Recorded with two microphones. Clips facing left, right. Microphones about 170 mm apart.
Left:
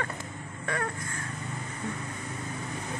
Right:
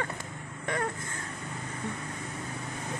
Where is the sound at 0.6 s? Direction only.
20° right (ahead or behind).